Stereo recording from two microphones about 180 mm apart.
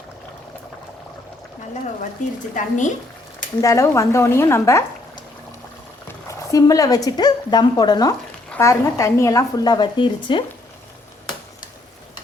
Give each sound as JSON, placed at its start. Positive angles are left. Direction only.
{"t": 2.2, "sound": "speech", "side_deg": 45}
{"t": 3.6, "sound": "a woman's voice", "side_deg": 15}
{"t": 6.2, "sound": "a woman's voice", "side_deg": 20}